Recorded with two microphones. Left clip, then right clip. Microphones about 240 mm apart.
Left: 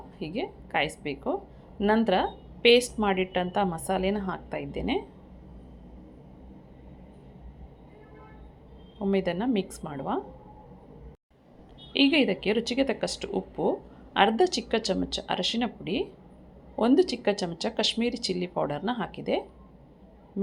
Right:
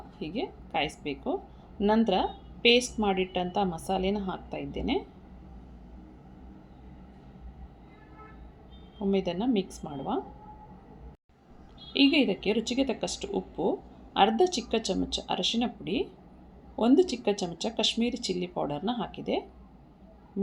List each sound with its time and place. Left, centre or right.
0.3 s speech: centre
0.9 s speech: left
1.8 s speech: centre
9.0 s speech: centre
11.9 s speech: centre
18.3 s speech: left
18.5 s speech: centre